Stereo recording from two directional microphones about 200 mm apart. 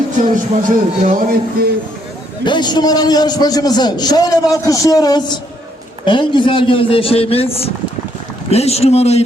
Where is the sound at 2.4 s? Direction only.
20° left (ahead or behind).